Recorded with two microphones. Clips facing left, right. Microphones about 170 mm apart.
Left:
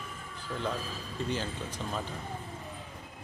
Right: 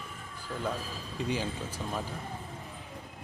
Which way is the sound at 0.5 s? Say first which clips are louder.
Even; centre (ahead or behind).